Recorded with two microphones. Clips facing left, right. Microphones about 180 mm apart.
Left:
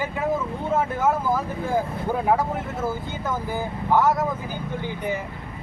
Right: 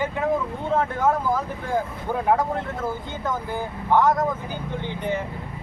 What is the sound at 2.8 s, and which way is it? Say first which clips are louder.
Speech: even; 5° left (ahead or behind).